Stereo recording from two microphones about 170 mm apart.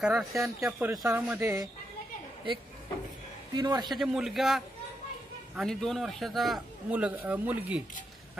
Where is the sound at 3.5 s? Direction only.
25° right (ahead or behind).